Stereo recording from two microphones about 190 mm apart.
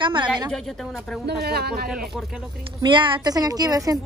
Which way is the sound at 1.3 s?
55° right (ahead or behind).